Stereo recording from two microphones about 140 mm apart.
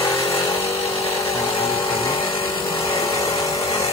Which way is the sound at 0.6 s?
45° left (ahead or behind).